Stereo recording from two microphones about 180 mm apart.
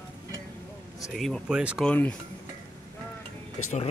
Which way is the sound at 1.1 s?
Centre (ahead or behind).